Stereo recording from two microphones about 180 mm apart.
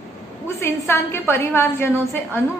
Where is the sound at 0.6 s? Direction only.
15° left (ahead or behind).